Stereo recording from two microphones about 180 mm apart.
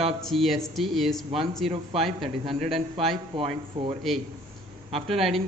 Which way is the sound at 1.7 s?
30° right (ahead or behind).